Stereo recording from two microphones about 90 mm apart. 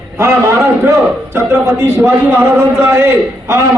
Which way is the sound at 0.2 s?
30° right (ahead or behind).